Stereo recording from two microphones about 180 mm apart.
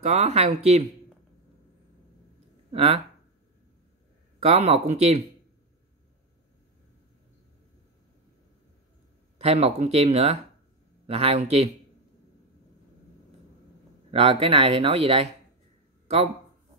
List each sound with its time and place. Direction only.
0.0 s speech: 40° right (ahead or behind)
2.7 s speech: 35° right (ahead or behind)
4.4 s speech: 35° right (ahead or behind)
9.4 s speech: 35° right (ahead or behind)
14.1 s speech: 30° right (ahead or behind)